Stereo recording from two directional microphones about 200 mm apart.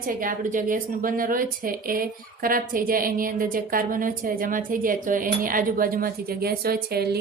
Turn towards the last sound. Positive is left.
turn(degrees=-50)  # may be behind; listen again after turning